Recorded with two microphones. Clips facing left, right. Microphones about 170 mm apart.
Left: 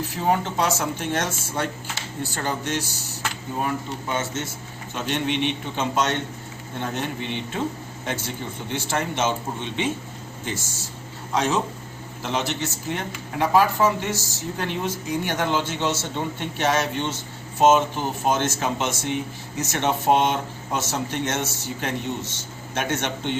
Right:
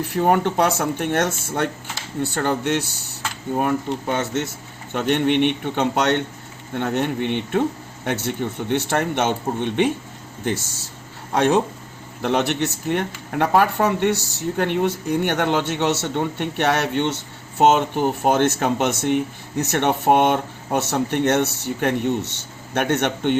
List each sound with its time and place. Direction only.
0.0 s speech: 60° right (ahead or behind)
4.1 s speech: 60° right (ahead or behind)